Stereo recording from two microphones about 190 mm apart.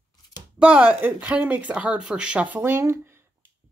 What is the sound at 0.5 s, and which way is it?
Speech, 5° right (ahead or behind).